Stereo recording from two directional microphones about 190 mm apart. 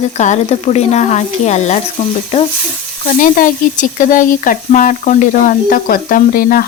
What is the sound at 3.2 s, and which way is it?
Speech, 45° left (ahead or behind).